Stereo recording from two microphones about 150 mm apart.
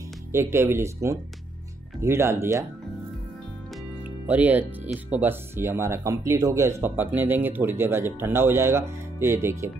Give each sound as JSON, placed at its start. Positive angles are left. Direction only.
{"t": 0.3, "sound": "speech", "side_deg": -15}
{"t": 4.3, "sound": "speech", "side_deg": -10}